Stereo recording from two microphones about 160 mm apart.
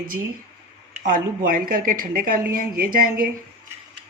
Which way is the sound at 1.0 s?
60° right (ahead or behind).